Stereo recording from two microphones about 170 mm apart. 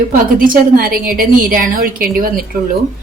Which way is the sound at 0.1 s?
55° right (ahead or behind).